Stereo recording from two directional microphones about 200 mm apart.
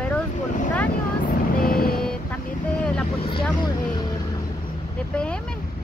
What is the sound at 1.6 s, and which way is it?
Vehicle, 45° left (ahead or behind).